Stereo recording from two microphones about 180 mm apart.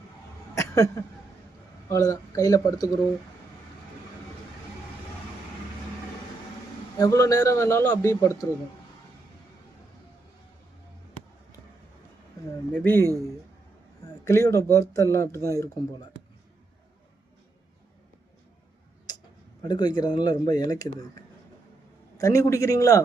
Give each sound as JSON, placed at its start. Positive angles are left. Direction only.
{"t": 0.5, "sound": "a sound", "side_deg": 15}
{"t": 1.9, "sound": "speech", "side_deg": 15}
{"t": 7.0, "sound": "a man's voice", "side_deg": 20}
{"t": 12.7, "sound": "a man's voice", "side_deg": 10}
{"t": 14.3, "sound": "a man's voice", "side_deg": 15}
{"t": 19.6, "sound": "speech", "side_deg": 25}
{"t": 22.2, "sound": "a man's voice", "side_deg": 15}